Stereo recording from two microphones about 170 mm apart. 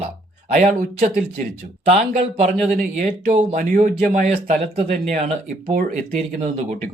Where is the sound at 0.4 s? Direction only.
45° right (ahead or behind).